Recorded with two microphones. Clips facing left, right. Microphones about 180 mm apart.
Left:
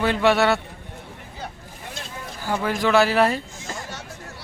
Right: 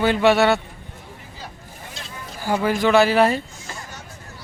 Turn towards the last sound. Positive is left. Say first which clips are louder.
# right 2 dB
turn(degrees=0)  # may be behind; listen again after turning